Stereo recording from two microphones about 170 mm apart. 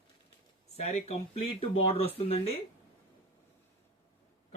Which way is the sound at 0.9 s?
40° left (ahead or behind).